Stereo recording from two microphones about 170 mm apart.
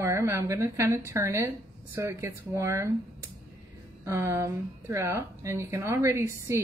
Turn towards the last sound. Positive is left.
turn(degrees=-15)  # may be behind; listen again after turning